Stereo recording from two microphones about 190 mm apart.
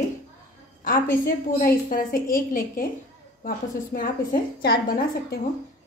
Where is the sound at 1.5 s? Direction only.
50° left (ahead or behind).